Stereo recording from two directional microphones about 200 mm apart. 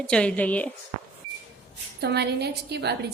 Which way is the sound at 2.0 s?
55° right (ahead or behind).